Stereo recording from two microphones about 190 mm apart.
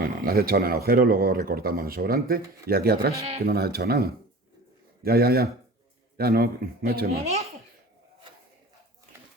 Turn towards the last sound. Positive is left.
turn(degrees=-35)  # may be behind; listen again after turning